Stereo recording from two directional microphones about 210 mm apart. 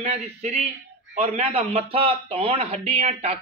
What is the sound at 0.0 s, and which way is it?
A man's voice, 35° right (ahead or behind).